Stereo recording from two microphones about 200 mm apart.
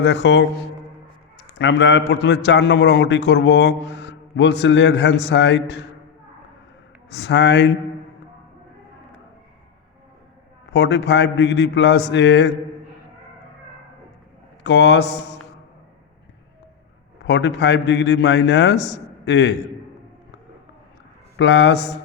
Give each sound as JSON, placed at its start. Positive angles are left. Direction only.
{"t": 0.0, "sound": "a man's voice", "side_deg": 60}
{"t": 1.5, "sound": "a man's voice", "side_deg": 60}
{"t": 7.1, "sound": "a man's voice", "side_deg": 60}
{"t": 10.7, "sound": "a man's voice", "side_deg": 60}
{"t": 14.6, "sound": "a man's voice", "side_deg": 65}
{"t": 17.2, "sound": "a man's voice", "side_deg": 65}
{"t": 21.3, "sound": "a man's voice", "side_deg": 65}